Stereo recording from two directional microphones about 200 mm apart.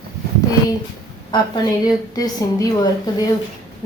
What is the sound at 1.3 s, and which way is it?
A woman's voice, 20° left (ahead or behind).